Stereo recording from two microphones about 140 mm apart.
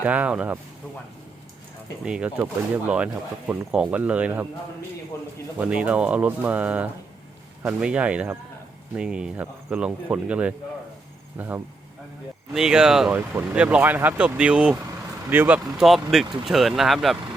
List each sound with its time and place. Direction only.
0.0 s speech: 10° right (ahead or behind)
2.0 s speech: 5° right (ahead or behind)
5.1 s a man's voice: 20° left (ahead or behind)
5.5 s speech: 10° right (ahead or behind)